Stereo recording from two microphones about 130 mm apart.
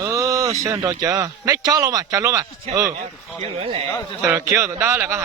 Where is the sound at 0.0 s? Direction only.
25° right (ahead or behind).